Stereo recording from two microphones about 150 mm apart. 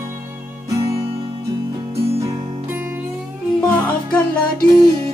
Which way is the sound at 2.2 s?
15° right (ahead or behind).